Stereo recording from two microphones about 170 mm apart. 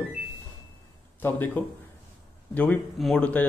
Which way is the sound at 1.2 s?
10° left (ahead or behind).